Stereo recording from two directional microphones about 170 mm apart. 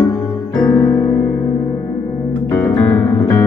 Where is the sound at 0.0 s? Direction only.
15° left (ahead or behind).